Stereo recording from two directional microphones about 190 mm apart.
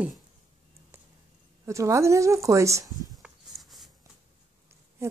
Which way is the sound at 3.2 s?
Centre (ahead or behind).